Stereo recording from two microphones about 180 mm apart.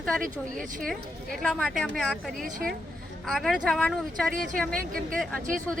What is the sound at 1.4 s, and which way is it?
A woman's voice, 5° left (ahead or behind).